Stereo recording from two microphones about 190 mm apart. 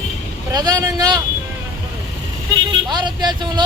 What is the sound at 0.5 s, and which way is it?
Speech, 20° right (ahead or behind).